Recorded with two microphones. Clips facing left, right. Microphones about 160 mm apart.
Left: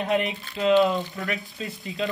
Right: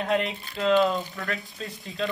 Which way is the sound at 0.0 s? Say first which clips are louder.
Left 1 dB; 5° left (ahead or behind).